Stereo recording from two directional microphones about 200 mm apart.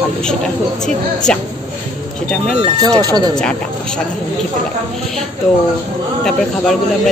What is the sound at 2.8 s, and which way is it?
Speech, 20° right (ahead or behind).